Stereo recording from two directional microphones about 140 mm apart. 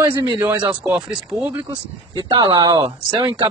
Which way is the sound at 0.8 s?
5° right (ahead or behind).